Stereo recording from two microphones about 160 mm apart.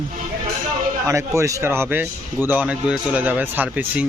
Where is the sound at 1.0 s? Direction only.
20° right (ahead or behind).